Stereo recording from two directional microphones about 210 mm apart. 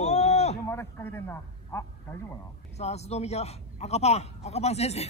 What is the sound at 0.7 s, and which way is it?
A man's voice, 10° left (ahead or behind).